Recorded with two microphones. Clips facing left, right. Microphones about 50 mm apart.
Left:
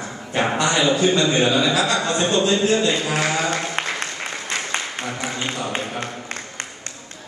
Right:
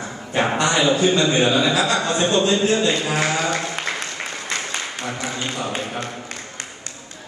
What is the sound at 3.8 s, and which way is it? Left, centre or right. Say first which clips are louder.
Applause: left 1 dB; left.